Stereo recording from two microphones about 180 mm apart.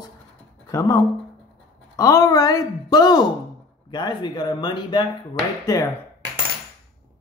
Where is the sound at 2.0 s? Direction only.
20° left (ahead or behind).